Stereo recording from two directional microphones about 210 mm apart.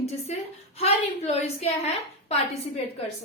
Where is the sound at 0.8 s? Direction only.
30° left (ahead or behind).